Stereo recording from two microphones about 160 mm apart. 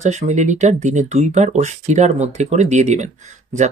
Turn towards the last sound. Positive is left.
turn(degrees=-45)  # may be behind; listen again after turning